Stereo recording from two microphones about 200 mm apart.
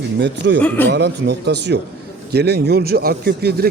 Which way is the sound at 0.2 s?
60° right (ahead or behind).